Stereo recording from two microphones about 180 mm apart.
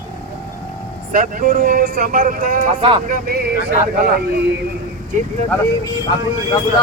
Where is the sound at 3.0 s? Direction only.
55° right (ahead or behind).